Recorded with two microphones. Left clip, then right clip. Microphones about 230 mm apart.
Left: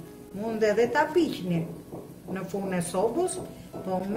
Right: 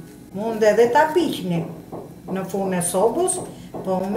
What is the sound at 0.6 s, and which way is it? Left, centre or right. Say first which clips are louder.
Speech: right 8 dB; left.